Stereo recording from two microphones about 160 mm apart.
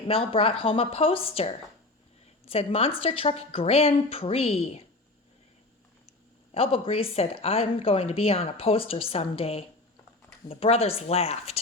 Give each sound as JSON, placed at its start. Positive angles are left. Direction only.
{"t": 0.1, "sound": "speech", "side_deg": 35}
{"t": 6.5, "sound": "speech", "side_deg": 40}